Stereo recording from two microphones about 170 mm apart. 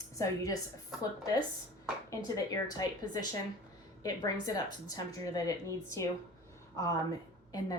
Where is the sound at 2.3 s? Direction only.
20° left (ahead or behind).